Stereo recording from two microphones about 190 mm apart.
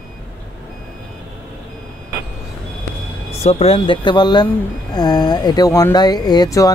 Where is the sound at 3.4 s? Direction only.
35° left (ahead or behind).